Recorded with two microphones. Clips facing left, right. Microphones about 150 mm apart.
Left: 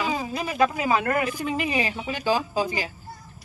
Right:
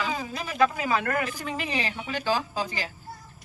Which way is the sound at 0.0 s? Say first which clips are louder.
Left 4 dB; 15° left (ahead or behind).